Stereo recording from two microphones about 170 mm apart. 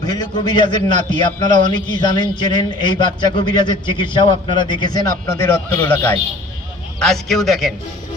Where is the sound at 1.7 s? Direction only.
25° left (ahead or behind).